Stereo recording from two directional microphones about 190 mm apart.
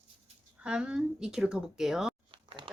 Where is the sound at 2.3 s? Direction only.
30° right (ahead or behind).